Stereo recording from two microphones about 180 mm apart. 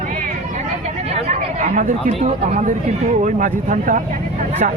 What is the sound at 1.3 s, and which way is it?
Speech, 45° right (ahead or behind).